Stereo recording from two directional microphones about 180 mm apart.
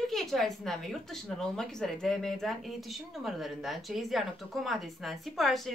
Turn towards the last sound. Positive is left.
turn(degrees=0)  # may be behind; listen again after turning